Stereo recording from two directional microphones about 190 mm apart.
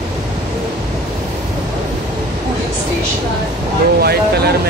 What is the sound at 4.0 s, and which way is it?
Speech, 55° right (ahead or behind).